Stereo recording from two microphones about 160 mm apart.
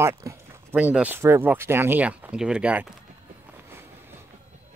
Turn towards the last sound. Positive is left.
turn(degrees=-15)  # may be behind; listen again after turning